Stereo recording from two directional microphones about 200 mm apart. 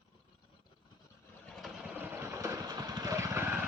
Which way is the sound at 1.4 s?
Centre (ahead or behind).